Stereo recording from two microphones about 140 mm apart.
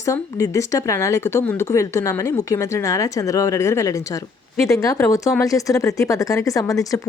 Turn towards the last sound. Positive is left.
turn(degrees=25)  # may be behind; listen again after turning